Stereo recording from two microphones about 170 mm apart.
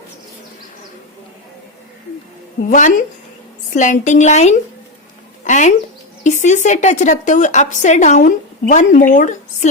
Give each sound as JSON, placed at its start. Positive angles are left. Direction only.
{"t": 2.6, "sound": "a woman's voice", "side_deg": 50}